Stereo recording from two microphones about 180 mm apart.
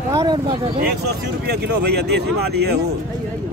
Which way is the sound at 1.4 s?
65° right (ahead or behind).